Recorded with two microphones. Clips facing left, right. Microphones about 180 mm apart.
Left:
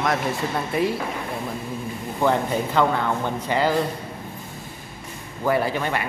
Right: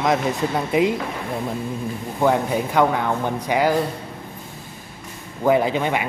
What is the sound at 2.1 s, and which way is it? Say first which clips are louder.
Speech: right 2 dB; 10° right (ahead or behind).